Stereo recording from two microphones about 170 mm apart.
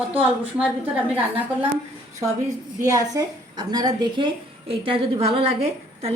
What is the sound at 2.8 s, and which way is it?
A woman's voice, 20° right (ahead or behind).